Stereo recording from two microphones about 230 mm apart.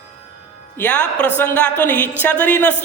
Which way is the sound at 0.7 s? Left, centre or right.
Centre.